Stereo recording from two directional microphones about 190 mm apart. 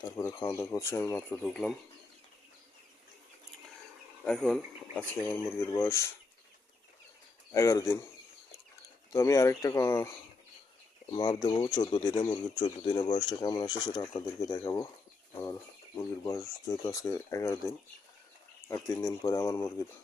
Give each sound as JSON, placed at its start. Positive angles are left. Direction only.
{"t": 0.0, "sound": "speech", "side_deg": 15}
{"t": 4.2, "sound": "speech", "side_deg": 5}
{"t": 7.5, "sound": "speech", "side_deg": 15}
{"t": 9.1, "sound": "speech", "side_deg": 15}
{"t": 15.3, "sound": "bird flight", "side_deg": 10}
{"t": 16.0, "sound": "speech", "side_deg": 15}
{"t": 18.7, "sound": "speech", "side_deg": 15}